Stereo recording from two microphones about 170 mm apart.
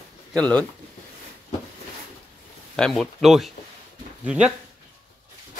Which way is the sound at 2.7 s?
5° left (ahead or behind).